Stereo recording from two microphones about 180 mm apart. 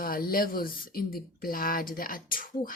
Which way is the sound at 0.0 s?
55° left (ahead or behind).